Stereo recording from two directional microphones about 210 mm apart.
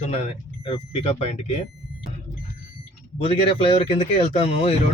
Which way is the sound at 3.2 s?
25° left (ahead or behind).